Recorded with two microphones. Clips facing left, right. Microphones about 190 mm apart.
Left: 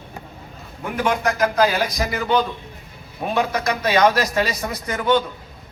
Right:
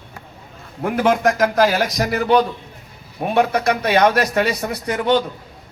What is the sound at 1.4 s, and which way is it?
Speech, 85° right.